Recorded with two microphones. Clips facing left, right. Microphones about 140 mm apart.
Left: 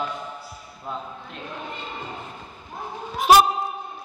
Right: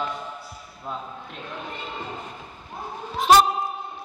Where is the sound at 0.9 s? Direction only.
Centre (ahead or behind).